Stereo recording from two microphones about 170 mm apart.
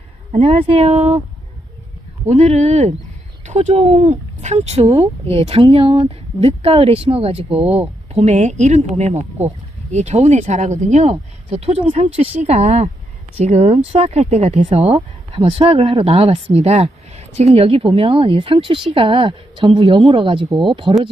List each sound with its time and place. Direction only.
0.3 s speech: 35° right (ahead or behind)
2.2 s speech: 40° right (ahead or behind)